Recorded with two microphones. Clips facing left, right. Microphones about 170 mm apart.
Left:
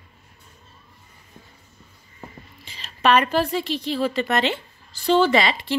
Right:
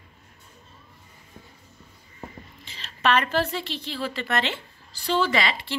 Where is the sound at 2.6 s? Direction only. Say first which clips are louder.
Left 4 dB; 15° left (ahead or behind).